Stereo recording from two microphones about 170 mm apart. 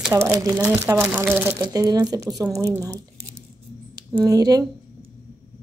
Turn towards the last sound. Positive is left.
turn(degrees=-20)  # may be behind; listen again after turning